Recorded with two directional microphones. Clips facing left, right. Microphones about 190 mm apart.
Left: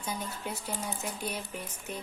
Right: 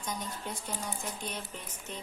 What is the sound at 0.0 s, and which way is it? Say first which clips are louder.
A woman's voice: left 1 dB; 10° left (ahead or behind).